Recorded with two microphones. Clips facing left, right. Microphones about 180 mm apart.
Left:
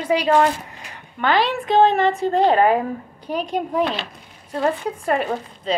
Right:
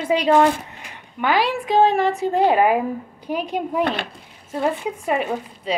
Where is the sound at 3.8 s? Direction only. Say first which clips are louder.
Right 1 dB; 60° right (ahead or behind).